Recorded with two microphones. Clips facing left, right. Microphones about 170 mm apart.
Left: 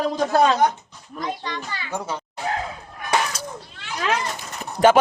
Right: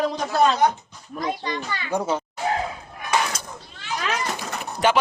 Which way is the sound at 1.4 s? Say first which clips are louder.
Right 2 dB; 15° right (ahead or behind).